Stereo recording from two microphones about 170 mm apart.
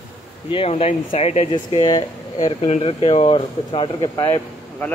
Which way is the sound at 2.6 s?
35° left (ahead or behind).